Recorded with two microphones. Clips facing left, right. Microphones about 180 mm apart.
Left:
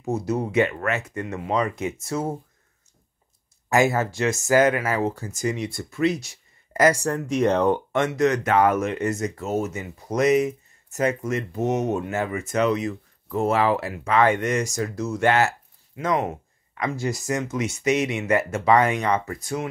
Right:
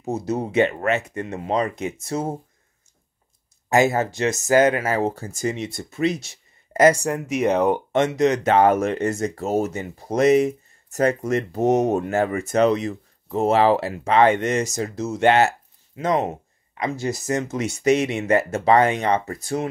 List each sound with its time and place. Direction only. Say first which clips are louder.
0.0 s speech: even; 20° right (ahead or behind)
3.6 s speech: right 2 dB; 20° right (ahead or behind)
7.9 s speech: right 2 dB; 20° right (ahead or behind)